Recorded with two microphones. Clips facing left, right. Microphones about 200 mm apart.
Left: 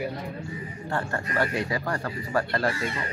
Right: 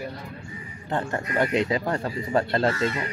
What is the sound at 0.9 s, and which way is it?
Speech, 20° right (ahead or behind).